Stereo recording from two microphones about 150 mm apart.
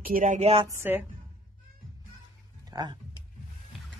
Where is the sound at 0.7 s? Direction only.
15° right (ahead or behind).